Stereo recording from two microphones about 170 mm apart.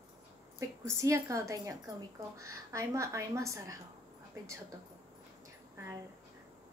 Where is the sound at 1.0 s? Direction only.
20° right (ahead or behind).